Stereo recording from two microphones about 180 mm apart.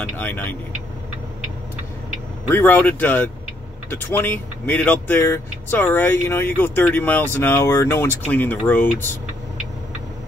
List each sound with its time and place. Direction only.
0.2 s speech: 10° left (ahead or behind)
2.5 s speech: 10° left (ahead or behind)